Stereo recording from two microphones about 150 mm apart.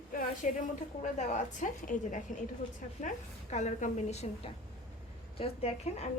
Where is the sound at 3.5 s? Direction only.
50° left (ahead or behind).